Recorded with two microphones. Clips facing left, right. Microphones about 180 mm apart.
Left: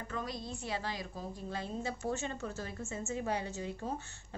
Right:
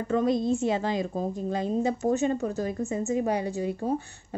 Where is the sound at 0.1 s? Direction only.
25° right (ahead or behind).